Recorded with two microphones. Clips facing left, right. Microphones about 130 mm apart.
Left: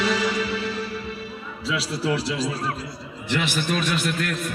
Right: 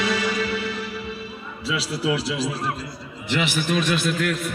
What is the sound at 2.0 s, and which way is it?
A man's voice, 10° right (ahead or behind).